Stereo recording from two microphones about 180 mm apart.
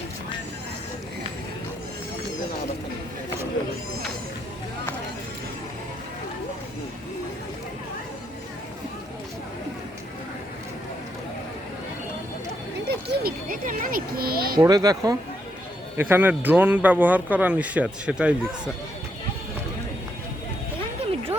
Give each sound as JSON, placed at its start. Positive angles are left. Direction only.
{"t": 12.9, "sound": "speech", "side_deg": -55}
{"t": 14.6, "sound": "speech", "side_deg": -20}